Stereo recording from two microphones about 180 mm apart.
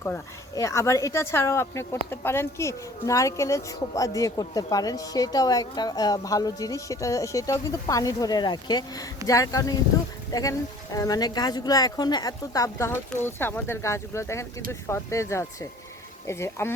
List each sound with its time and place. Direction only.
0.0 s speech: 15° left (ahead or behind)